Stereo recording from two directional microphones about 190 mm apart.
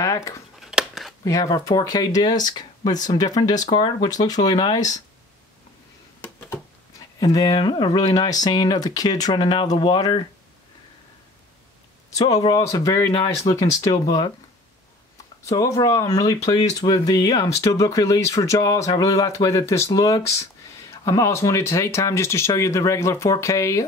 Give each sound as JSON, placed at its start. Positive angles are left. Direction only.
{"t": 0.0, "sound": "speech", "side_deg": 15}
{"t": 0.6, "sound": "scissors", "side_deg": 0}
{"t": 1.2, "sound": "speech", "side_deg": 15}
{"t": 7.3, "sound": "speech", "side_deg": 20}
{"t": 12.2, "sound": "speech", "side_deg": 20}
{"t": 13.1, "sound": "speech", "side_deg": 30}
{"t": 13.5, "sound": "speech", "side_deg": 15}
{"t": 15.4, "sound": "speech", "side_deg": 15}